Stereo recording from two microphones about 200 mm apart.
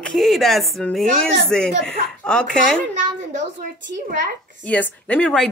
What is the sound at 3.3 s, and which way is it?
A woman's voice, 40° right (ahead or behind).